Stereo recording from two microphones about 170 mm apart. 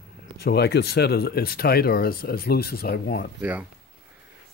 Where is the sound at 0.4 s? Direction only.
70° left (ahead or behind).